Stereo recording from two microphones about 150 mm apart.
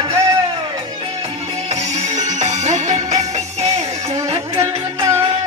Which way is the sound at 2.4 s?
50° right (ahead or behind).